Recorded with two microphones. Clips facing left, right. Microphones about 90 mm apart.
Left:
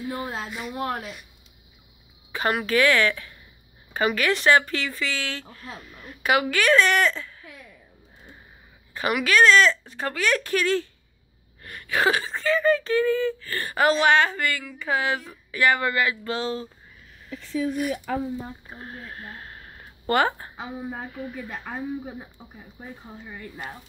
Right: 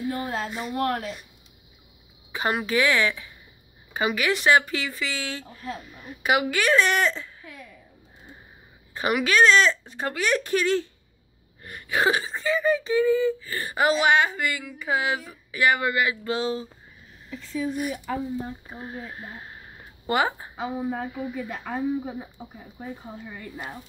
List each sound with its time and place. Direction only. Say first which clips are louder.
0.1 s speech: right 2 dB; 5° left (ahead or behind)
0.5 s speech: right 2 dB; 30° right (ahead or behind)
0.7 s speech: right 4 dB; 5° left (ahead or behind)
2.3 s speech: left 1 dB; 20° right (ahead or behind)
8.9 s speech: even; 25° right (ahead or behind)
18.7 s speech: right 3 dB; 5° right (ahead or behind)